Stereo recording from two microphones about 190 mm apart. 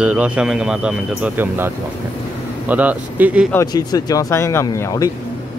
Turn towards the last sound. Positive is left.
turn(degrees=15)  # may be behind; listen again after turning